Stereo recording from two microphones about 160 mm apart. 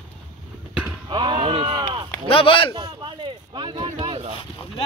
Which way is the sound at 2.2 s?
35° left (ahead or behind).